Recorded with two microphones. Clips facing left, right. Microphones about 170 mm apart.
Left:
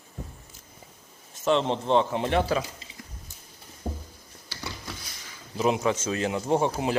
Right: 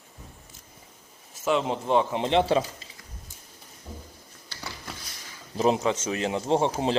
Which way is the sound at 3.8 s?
75° left (ahead or behind).